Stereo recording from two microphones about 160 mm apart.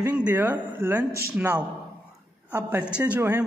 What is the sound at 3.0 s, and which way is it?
Speech, 15° right (ahead or behind).